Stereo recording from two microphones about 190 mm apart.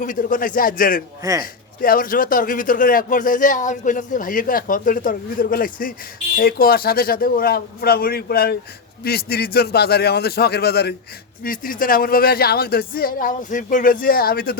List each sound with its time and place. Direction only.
0.0 s speech: 45° left (ahead or behind)
1.2 s a man's voice: 15° right (ahead or behind)
1.8 s a man's voice: 50° left (ahead or behind)